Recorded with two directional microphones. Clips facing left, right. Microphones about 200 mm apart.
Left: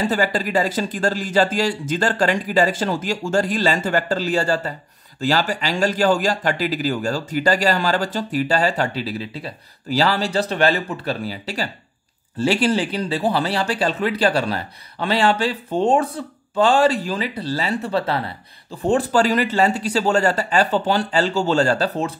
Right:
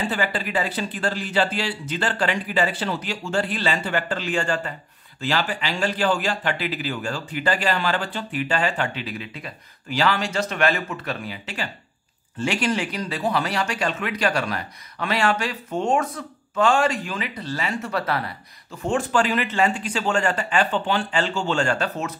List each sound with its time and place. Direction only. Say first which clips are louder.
0.0 s speech: left 5 dB; 40° left (ahead or behind)